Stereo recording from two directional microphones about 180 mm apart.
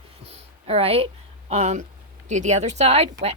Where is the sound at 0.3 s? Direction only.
35° right (ahead or behind).